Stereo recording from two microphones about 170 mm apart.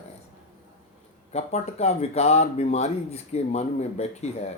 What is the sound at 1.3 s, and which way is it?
Speech, 40° left (ahead or behind).